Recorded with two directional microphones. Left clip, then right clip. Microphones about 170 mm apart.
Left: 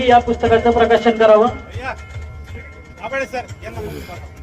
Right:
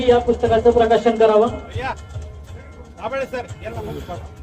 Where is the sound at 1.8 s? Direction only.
85° right.